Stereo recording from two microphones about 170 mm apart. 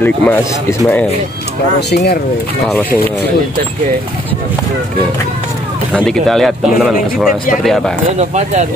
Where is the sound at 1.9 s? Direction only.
75° left (ahead or behind).